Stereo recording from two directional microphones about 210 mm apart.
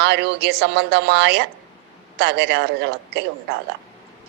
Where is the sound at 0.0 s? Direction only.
55° right (ahead or behind).